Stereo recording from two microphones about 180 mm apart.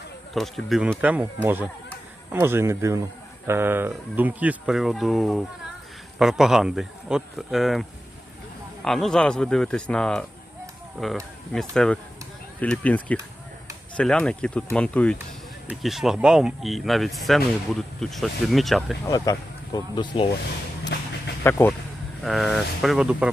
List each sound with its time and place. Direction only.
0.3 s speech: centre (ahead or behind)
2.3 s speech: 15° right (ahead or behind); by 10.2 s 5° left (ahead or behind)
11.7 s speech: 5° left (ahead or behind)
19.0 s speech: 20° left (ahead or behind)
20.9 s a sound: 70° left (ahead or behind)
21.4 s speech: 15° left (ahead or behind)
22.2 s speech: centre (ahead or behind)